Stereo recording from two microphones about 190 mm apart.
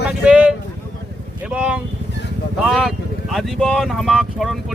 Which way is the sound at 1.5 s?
5° right (ahead or behind).